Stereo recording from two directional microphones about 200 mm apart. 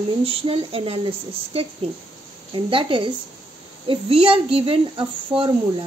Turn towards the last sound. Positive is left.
turn(degrees=-25)  # may be behind; listen again after turning